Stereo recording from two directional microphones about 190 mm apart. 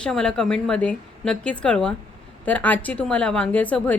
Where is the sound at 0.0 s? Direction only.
5° left (ahead or behind).